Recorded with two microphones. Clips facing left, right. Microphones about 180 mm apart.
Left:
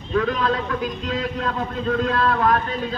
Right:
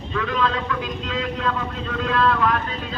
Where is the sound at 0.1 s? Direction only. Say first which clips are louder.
Left 3 dB; 40° left (ahead or behind).